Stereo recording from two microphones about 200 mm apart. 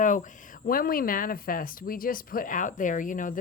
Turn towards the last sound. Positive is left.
turn(degrees=40)  # may be behind; listen again after turning